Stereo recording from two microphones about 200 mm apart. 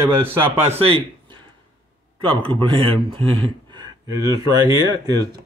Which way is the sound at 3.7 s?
20° right (ahead or behind).